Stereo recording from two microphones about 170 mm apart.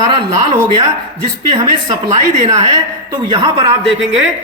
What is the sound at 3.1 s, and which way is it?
Speech, 30° right (ahead or behind).